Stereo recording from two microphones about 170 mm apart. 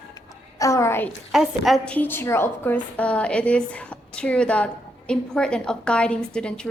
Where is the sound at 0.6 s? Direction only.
15° left (ahead or behind).